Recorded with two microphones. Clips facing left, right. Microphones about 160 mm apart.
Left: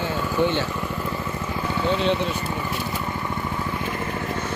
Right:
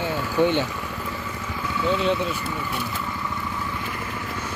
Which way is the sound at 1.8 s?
30° left (ahead or behind).